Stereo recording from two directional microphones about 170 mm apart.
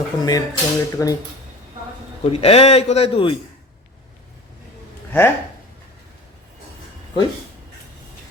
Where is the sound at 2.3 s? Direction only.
35° left (ahead or behind).